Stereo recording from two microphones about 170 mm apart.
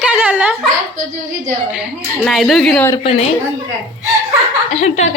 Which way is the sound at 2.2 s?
Centre (ahead or behind).